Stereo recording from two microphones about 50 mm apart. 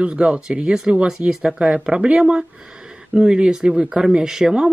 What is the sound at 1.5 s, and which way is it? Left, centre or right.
Speech, centre.